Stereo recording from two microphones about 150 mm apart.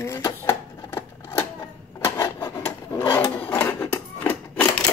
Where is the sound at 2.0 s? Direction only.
20° left (ahead or behind).